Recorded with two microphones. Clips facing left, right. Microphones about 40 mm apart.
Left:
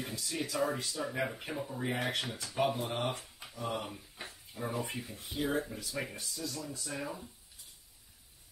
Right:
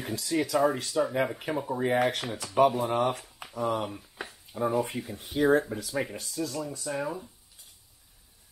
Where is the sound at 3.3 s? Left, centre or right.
Right.